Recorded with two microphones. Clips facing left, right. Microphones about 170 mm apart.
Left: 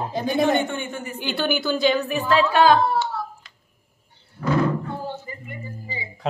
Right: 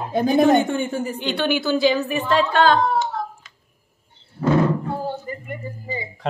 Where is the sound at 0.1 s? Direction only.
45° right (ahead or behind).